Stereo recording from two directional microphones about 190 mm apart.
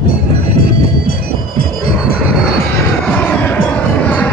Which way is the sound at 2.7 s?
10° left (ahead or behind).